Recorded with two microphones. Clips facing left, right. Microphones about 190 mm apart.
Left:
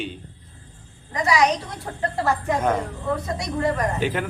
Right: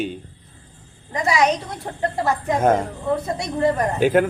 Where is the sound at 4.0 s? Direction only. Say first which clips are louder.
Right 8 dB; 50° right (ahead or behind).